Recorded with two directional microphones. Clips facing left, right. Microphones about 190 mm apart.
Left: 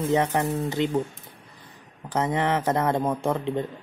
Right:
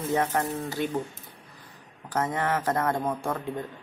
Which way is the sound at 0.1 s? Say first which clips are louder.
Left 2 dB; 20° left (ahead or behind).